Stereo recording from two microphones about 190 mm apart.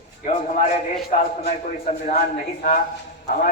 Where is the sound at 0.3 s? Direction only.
40° left (ahead or behind).